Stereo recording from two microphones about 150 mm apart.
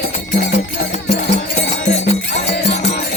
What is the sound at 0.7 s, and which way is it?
Music, 85° left.